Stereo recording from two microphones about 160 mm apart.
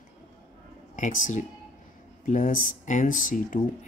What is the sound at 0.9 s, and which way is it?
Speech, 55° left (ahead or behind).